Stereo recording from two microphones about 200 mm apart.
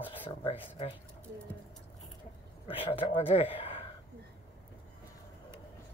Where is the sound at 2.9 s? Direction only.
25° left (ahead or behind).